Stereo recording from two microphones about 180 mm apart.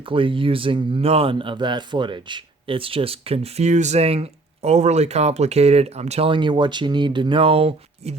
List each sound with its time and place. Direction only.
0.0 s speech: 30° right (ahead or behind)